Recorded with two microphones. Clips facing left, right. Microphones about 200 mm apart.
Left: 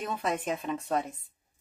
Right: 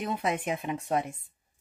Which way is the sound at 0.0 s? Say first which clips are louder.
Right 1 dB; 15° right (ahead or behind).